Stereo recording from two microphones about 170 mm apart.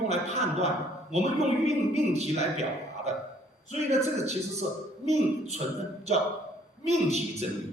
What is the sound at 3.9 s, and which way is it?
Speech, 40° right (ahead or behind).